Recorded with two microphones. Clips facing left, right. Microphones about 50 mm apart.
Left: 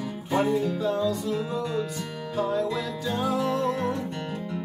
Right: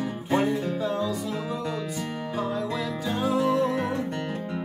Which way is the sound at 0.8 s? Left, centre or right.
Centre.